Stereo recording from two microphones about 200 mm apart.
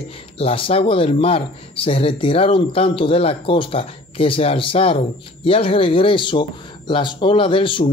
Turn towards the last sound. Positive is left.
turn(degrees=25)  # may be behind; listen again after turning